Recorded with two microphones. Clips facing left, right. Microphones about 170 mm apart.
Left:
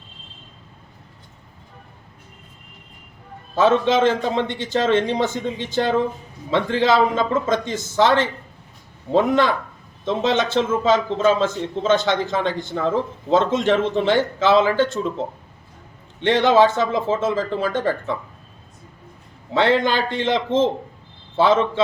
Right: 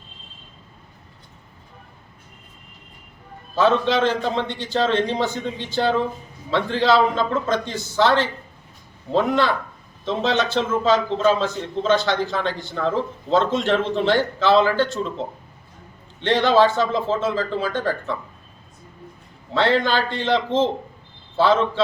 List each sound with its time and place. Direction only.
3.5 s a man's voice: 15° left (ahead or behind)
9.1 s a man's voice: 15° left (ahead or behind)
16.2 s a man's voice: 15° left (ahead or behind)
19.5 s a man's voice: 15° left (ahead or behind)